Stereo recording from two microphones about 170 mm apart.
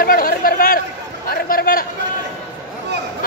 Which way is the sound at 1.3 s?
60° left (ahead or behind).